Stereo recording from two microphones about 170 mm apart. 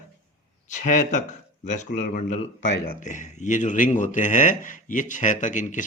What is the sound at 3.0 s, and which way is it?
Speech, 45° left (ahead or behind).